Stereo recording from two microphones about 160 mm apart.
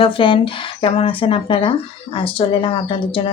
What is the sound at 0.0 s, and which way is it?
Speech, 35° left (ahead or behind).